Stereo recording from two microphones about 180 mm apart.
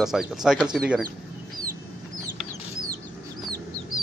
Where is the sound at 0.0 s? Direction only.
Centre (ahead or behind).